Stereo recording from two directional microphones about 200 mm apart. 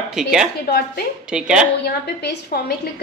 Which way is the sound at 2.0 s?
55° left (ahead or behind).